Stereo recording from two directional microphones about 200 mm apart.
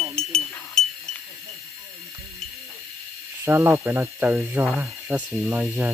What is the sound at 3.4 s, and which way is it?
Speech, 15° right (ahead or behind).